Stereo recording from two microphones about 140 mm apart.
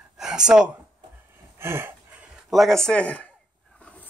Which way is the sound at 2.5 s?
Centre (ahead or behind).